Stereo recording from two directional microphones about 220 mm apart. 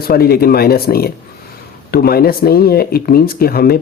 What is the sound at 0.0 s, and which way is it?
Speech, 45° left (ahead or behind).